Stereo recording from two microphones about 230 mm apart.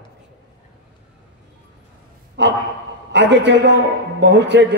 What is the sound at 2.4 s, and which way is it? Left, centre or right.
A man's voice, right.